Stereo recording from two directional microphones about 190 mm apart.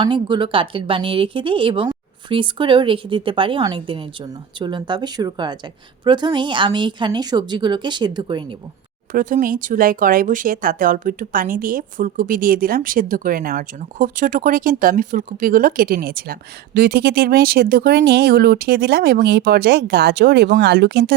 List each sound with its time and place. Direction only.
0.0 s a woman's voice: 25° right (ahead or behind)
9.1 s speech: 45° right (ahead or behind); by 21.2 s 60° right (ahead or behind)